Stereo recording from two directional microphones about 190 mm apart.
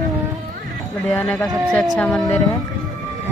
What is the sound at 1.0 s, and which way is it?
A child's voice, 5° left (ahead or behind).